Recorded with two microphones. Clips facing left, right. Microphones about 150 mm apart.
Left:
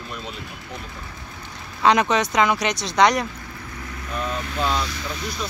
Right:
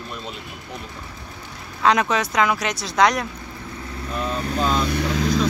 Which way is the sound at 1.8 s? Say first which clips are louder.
Left 1 dB; centre (ahead or behind).